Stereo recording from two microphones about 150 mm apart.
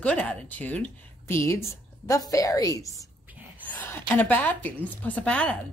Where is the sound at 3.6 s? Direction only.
10° left (ahead or behind).